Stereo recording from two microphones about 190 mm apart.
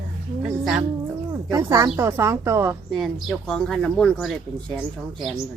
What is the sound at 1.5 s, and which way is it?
Speech, 15° right (ahead or behind).